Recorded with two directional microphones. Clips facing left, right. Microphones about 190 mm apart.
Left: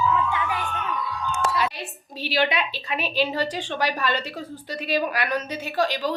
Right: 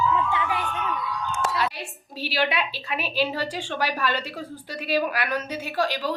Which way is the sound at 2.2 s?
5° right (ahead or behind).